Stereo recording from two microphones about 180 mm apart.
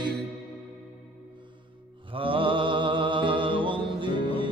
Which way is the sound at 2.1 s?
30° right (ahead or behind).